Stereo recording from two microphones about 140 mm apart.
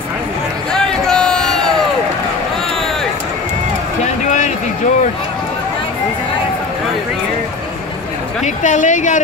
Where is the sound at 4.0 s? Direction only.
60° left (ahead or behind).